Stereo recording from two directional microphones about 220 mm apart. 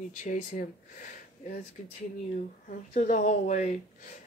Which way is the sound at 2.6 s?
35° left (ahead or behind).